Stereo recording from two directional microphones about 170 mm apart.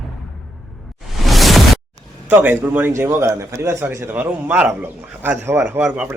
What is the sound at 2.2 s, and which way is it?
A man's voice, 10° right (ahead or behind).